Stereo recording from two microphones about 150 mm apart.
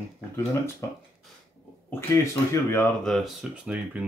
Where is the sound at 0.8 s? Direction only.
20° left (ahead or behind).